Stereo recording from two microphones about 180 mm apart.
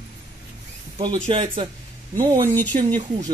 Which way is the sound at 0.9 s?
30° right (ahead or behind).